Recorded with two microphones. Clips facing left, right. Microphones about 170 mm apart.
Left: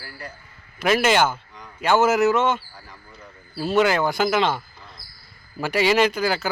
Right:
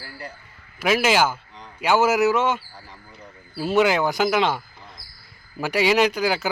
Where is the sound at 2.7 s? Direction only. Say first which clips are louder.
Right 1 dB; 25° right (ahead or behind).